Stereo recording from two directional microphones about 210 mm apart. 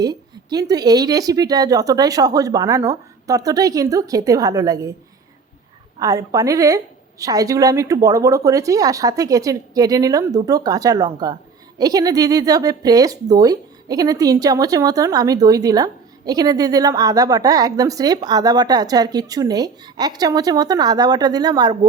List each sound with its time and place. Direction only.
0.0 s speech: 20° right (ahead or behind)
6.0 s speech: 15° right (ahead or behind)